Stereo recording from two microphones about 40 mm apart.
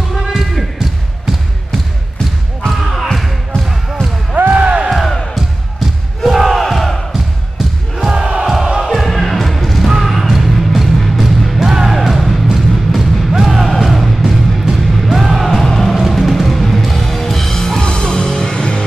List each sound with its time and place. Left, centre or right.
0.2 s basketball bounce: centre
2.6 s a sound: centre
4.5 s music: right
4.8 s music: centre
6.6 s crowd: centre
7.5 s a sound: centre
8.9 s music: centre
17.8 s music: left